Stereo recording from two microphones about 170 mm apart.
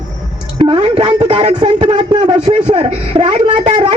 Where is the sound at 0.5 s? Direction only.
30° right (ahead or behind).